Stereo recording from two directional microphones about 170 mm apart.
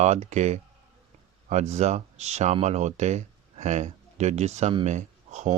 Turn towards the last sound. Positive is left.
turn(degrees=-45)  # may be behind; listen again after turning